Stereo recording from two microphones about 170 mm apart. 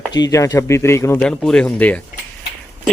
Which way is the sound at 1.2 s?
5° left (ahead or behind).